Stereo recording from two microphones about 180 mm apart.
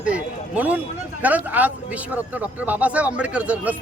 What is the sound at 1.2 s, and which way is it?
Speech, 10° right (ahead or behind).